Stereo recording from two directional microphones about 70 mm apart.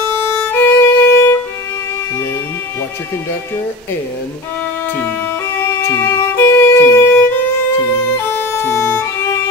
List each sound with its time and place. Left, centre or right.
0.2 s violin: left
5.9 s music: left
8.4 s music: left